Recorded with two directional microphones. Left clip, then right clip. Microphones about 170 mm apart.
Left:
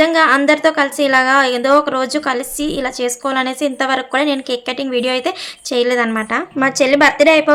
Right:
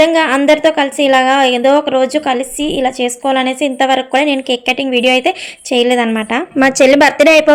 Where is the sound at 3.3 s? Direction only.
35° left (ahead or behind).